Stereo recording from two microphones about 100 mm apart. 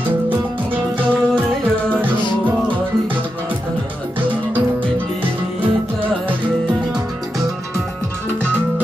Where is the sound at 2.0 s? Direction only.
15° right (ahead or behind).